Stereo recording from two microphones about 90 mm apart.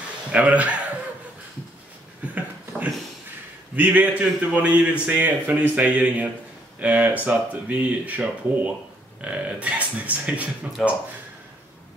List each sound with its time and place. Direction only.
0.3 s speech: 15° right (ahead or behind)
3.7 s speech: 20° right (ahead or behind)
10.8 s speech: centre (ahead or behind)